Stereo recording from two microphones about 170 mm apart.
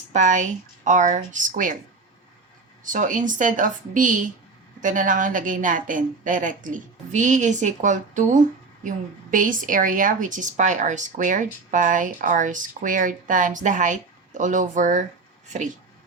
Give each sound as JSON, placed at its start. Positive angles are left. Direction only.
{"t": 0.1, "sound": "a woman's voice", "side_deg": -45}
{"t": 2.8, "sound": "a woman's voice", "side_deg": -50}